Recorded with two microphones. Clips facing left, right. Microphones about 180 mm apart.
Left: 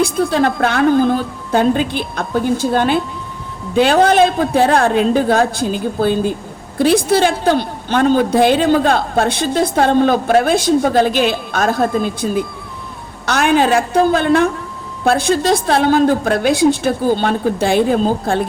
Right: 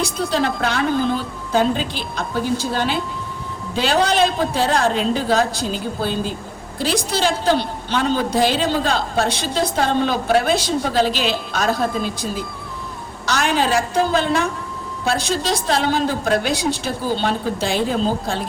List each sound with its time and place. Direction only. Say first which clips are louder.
0.0 s a woman's voice: left 6 dB; 55° left (ahead or behind)